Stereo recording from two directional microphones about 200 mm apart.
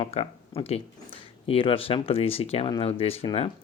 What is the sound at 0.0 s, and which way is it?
Speech, 30° left (ahead or behind).